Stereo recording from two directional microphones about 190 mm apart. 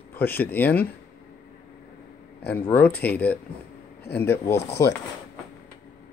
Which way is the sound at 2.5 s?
10° left (ahead or behind).